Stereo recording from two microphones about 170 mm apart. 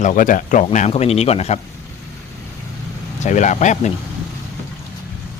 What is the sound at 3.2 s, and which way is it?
Speech, 45° left (ahead or behind).